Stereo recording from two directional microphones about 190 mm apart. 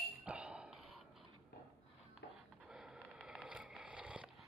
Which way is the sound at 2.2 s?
60° left (ahead or behind).